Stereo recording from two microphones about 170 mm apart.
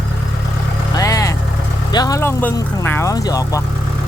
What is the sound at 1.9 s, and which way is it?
Speech, 20° left (ahead or behind).